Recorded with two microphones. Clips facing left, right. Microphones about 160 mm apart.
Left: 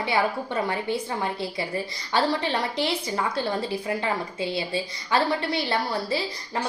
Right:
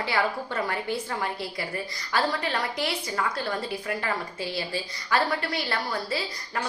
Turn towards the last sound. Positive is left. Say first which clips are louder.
# left 3 dB
turn(degrees=20)  # may be behind; listen again after turning